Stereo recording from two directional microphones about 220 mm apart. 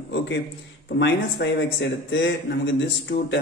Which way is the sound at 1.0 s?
50° left (ahead or behind).